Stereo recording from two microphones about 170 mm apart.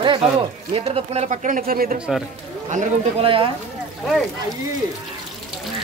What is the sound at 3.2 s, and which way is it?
Speech, 30° right (ahead or behind).